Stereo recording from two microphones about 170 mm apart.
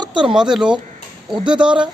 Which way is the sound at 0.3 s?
5° right (ahead or behind).